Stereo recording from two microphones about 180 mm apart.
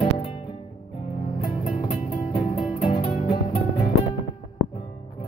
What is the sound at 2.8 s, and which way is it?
Music, 30° left (ahead or behind).